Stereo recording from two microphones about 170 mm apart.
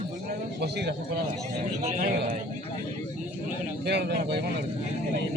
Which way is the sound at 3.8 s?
70° right (ahead or behind).